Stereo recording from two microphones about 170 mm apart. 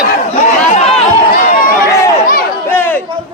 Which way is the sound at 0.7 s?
40° left (ahead or behind).